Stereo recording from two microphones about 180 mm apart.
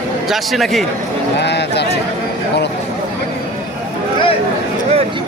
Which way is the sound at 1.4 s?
70° left (ahead or behind).